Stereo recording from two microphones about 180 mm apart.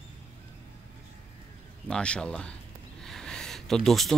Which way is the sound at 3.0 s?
5° left (ahead or behind).